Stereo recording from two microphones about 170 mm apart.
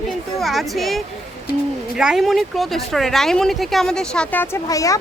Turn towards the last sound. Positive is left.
turn(degrees=20)  # may be behind; listen again after turning